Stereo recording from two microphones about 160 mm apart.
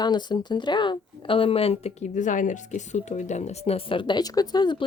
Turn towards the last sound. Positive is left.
turn(degrees=25)  # may be behind; listen again after turning